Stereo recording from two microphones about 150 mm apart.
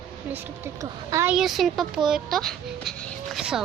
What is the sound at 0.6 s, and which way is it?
Speech, 20° right (ahead or behind).